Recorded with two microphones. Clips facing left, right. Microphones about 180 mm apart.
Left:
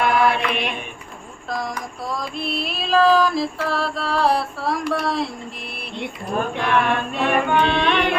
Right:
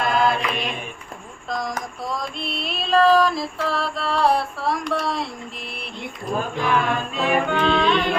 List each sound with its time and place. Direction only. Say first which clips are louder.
0.0 s mantra: left 2 dB; 70° left (ahead or behind)
1.5 s music: even; centre (ahead or behind)
6.6 s music: left 1 dB; 70° left (ahead or behind)